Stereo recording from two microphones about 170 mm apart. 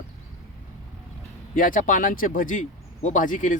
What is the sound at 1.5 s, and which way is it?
Speech, 55° left (ahead or behind).